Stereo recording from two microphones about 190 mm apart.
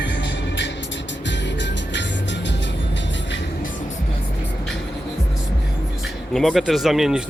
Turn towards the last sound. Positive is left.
turn(degrees=0)  # may be behind; listen again after turning